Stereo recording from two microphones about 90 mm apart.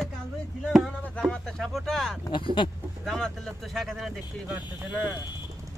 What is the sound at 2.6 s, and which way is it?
Speech, 65° left (ahead or behind).